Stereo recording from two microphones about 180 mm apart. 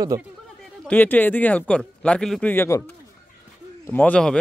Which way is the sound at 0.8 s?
10° left (ahead or behind).